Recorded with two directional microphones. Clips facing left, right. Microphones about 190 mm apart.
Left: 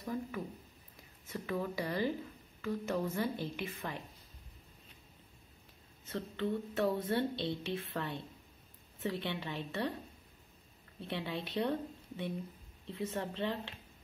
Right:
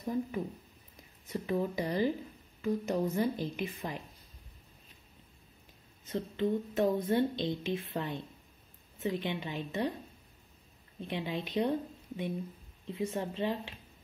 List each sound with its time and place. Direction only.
0.0 s speech: 20° right (ahead or behind)
6.0 s speech: 15° right (ahead or behind)
11.0 s speech: 15° right (ahead or behind)
12.8 s speech: 15° right (ahead or behind)